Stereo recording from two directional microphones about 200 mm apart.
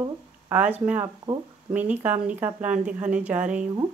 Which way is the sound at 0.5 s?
10° right (ahead or behind).